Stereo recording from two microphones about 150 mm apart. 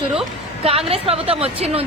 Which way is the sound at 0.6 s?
40° right (ahead or behind).